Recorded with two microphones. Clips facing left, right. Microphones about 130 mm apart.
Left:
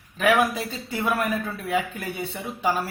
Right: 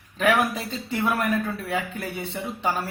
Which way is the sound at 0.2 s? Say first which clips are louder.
Left 1 dB; 5° left (ahead or behind).